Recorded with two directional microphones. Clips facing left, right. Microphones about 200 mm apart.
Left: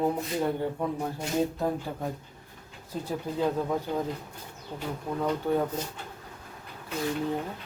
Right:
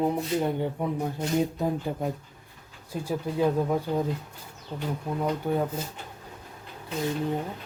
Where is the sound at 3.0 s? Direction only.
10° right (ahead or behind).